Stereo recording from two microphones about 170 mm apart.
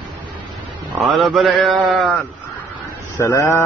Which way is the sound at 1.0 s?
Centre (ahead or behind).